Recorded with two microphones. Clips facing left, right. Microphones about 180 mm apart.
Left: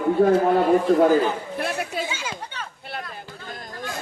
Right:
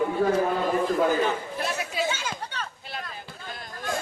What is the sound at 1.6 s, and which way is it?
Chatter, 55° left (ahead or behind).